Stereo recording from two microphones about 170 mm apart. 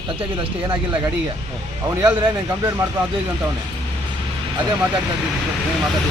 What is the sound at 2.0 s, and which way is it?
Speech, 25° right (ahead or behind).